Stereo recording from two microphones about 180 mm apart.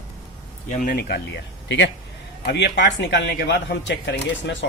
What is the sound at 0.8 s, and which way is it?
Speech, 55° left (ahead or behind).